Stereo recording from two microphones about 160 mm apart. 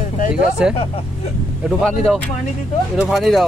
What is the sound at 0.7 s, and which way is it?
Speech, 40° left (ahead or behind).